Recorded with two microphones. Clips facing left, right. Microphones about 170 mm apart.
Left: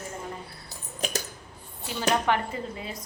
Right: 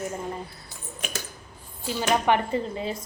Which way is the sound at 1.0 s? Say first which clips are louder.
Left 4 dB; 40° left (ahead or behind).